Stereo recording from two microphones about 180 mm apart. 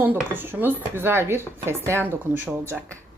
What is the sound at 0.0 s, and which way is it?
Speech, 10° right (ahead or behind).